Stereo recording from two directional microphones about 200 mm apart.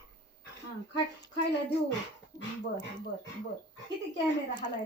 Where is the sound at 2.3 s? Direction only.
20° left (ahead or behind).